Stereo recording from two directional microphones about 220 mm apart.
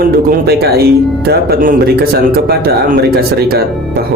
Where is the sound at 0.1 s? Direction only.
45° right (ahead or behind).